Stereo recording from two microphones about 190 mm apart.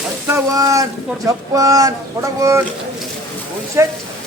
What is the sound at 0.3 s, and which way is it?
Speech, 15° right (ahead or behind).